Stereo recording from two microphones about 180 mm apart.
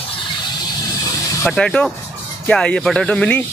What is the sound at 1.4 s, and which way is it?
Speech, 5° left (ahead or behind).